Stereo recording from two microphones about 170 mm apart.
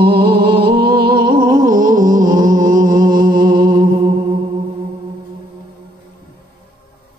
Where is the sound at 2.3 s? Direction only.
20° right (ahead or behind).